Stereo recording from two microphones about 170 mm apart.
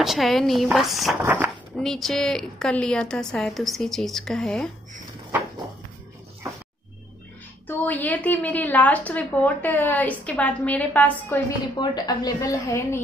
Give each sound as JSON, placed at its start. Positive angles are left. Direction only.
{"t": 0.0, "sound": "a woman's voice", "side_deg": 0}
{"t": 1.2, "sound": "speech", "side_deg": -10}
{"t": 1.8, "sound": "a woman's voice", "side_deg": 0}
{"t": 7.6, "sound": "a woman's voice", "side_deg": 10}
{"t": 11.8, "sound": "a woman's voice", "side_deg": 25}